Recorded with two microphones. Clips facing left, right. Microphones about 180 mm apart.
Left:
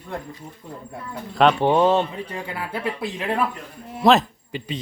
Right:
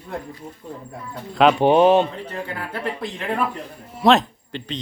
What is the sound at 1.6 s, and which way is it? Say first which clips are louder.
Speech: right 3 dB; 15° right (ahead or behind).